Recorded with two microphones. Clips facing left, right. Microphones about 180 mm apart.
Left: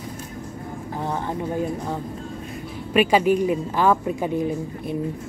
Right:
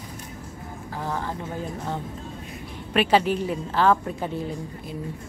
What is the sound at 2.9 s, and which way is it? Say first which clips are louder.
Speech: left 3 dB; 10° left (ahead or behind).